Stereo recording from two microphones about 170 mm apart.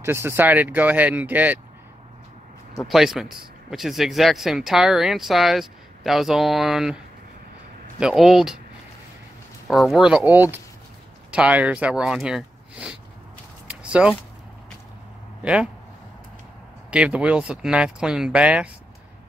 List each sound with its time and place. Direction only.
0.0 s speech: 15° right (ahead or behind)
2.8 s speech: centre (ahead or behind)
8.0 s speech: centre (ahead or behind)
9.7 s speech: centre (ahead or behind)
13.7 s a sound: 5° right (ahead or behind)
15.4 s speech: 5° right (ahead or behind)
16.9 s speech: 5° right (ahead or behind)